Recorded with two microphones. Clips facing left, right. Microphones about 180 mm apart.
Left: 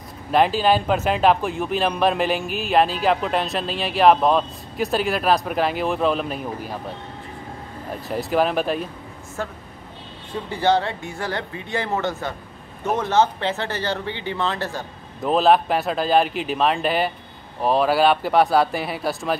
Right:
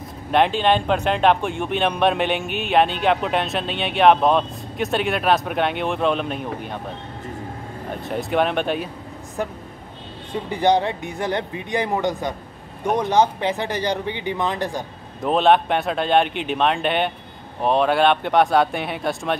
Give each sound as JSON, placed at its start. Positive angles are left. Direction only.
{"t": 0.3, "sound": "speech", "side_deg": 0}
{"t": 7.9, "sound": "speech", "side_deg": 0}
{"t": 9.4, "sound": "speech", "side_deg": -15}
{"t": 15.2, "sound": "speech", "side_deg": 0}